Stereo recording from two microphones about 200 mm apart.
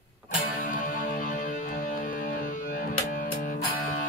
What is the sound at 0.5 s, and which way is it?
Music, 45° left (ahead or behind).